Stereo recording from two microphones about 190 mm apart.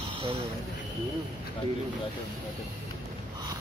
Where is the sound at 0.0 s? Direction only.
30° right (ahead or behind).